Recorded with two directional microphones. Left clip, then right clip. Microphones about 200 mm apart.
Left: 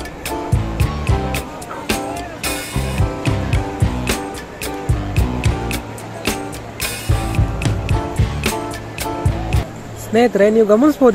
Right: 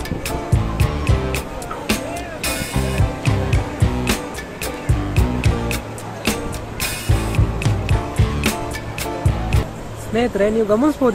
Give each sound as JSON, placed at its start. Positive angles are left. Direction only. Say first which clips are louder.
{"t": 0.3, "sound": "music", "louder": "left 4 dB", "side_deg": 0}
{"t": 10.1, "sound": "speech", "louder": "left 5 dB", "side_deg": 25}